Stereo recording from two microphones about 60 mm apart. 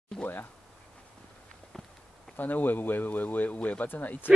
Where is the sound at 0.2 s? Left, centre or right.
Left.